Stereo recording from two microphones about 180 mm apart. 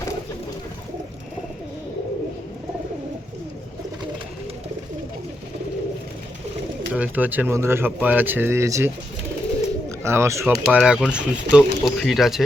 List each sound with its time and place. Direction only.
6.9 s speech: 10° right (ahead or behind)
10.0 s speech: 15° right (ahead or behind)
10.5 s speech: 5° right (ahead or behind)